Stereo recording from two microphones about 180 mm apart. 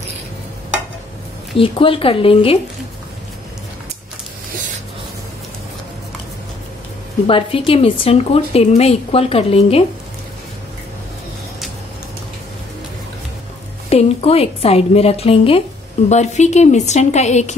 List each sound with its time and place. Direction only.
1.6 s a woman's voice: 30° left (ahead or behind)
7.2 s a woman's voice: 30° left (ahead or behind)
13.8 s a woman's voice: 35° left (ahead or behind)